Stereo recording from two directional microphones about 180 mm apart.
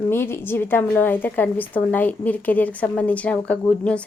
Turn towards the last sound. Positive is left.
turn(degrees=5)  # may be behind; listen again after turning